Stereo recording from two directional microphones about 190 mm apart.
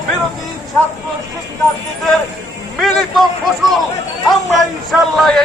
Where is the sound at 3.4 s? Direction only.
Centre (ahead or behind).